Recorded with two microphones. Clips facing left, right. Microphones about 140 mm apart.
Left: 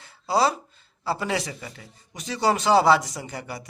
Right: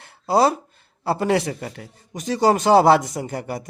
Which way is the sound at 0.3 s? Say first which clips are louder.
Right 4 dB; 50° right (ahead or behind).